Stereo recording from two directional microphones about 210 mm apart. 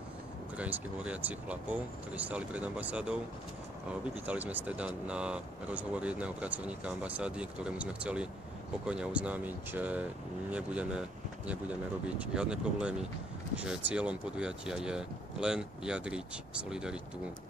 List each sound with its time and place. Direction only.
0.6 s speech: 5° right (ahead or behind)
4.3 s speech: 10° right (ahead or behind)